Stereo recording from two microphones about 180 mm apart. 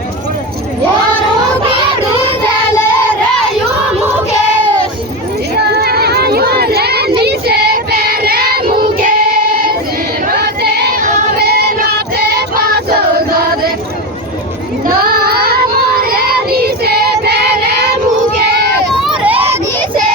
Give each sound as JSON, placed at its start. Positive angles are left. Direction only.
{"t": 5.5, "sound": "a sound", "side_deg": -60}
{"t": 7.2, "sound": "child singing", "side_deg": -65}
{"t": 8.8, "sound": "singing", "side_deg": -50}
{"t": 10.3, "sound": "choir", "side_deg": -65}
{"t": 11.3, "sound": "music", "side_deg": -65}
{"t": 15.0, "sound": "child singing", "side_deg": -60}
{"t": 19.0, "sound": "a sound", "side_deg": -10}